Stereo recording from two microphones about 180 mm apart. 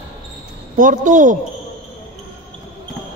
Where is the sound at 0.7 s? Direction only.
45° right (ahead or behind).